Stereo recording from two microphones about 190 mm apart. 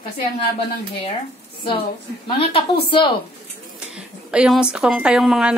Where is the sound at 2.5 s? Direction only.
25° left (ahead or behind).